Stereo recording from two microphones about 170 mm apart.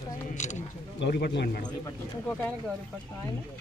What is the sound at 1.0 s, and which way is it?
Speech, 80° left.